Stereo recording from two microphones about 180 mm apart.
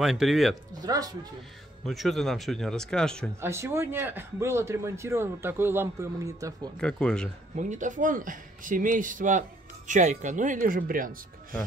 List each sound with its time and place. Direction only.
0.0 s speech: centre (ahead or behind)
0.7 s speech: 20° right (ahead or behind)
1.9 s speech: centre (ahead or behind)
3.3 s speech: 15° right (ahead or behind)
6.8 s speech: 5° left (ahead or behind)
7.5 s speech: 40° right (ahead or behind)